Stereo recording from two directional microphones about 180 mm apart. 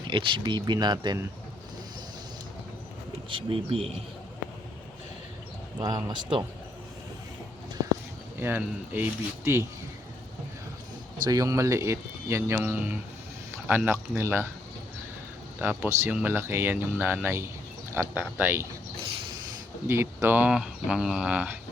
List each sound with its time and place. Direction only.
0.1 s speech: 25° right (ahead or behind)
3.2 s speech: 30° right (ahead or behind)
5.8 s speech: 25° right (ahead or behind)
8.4 s speech: 10° right (ahead or behind)
11.2 s speech: 20° right (ahead or behind)
15.6 s speech: 10° right (ahead or behind)
19.9 s speech: 15° right (ahead or behind)